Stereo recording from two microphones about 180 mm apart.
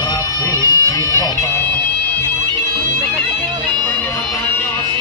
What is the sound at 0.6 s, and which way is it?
Bagpipes, 20° left (ahead or behind).